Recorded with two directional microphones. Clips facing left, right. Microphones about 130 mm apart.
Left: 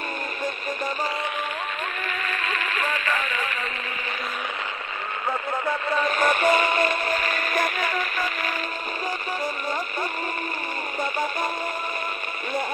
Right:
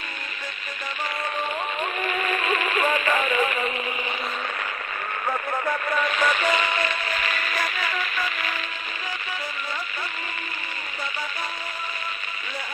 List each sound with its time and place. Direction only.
2.0 s music: 10° right (ahead or behind)
6.1 s music: 50° left (ahead or behind)